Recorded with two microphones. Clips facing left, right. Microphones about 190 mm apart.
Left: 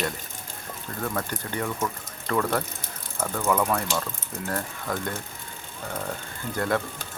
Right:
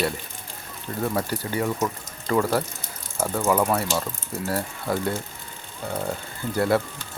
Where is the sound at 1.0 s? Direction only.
10° right (ahead or behind).